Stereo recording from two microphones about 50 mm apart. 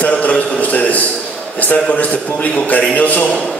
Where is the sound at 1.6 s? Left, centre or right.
Left.